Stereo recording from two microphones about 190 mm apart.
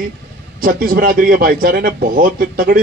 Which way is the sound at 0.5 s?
50° right (ahead or behind).